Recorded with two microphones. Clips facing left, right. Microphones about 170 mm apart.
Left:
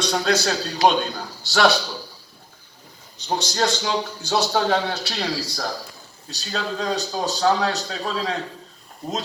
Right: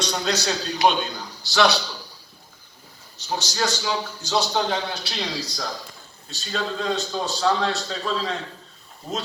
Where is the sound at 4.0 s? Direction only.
15° left (ahead or behind).